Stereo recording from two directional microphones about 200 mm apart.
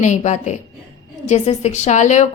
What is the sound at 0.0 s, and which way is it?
A woman's voice, 35° left (ahead or behind).